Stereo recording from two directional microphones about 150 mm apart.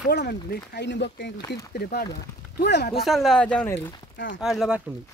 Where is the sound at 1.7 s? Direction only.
90° left.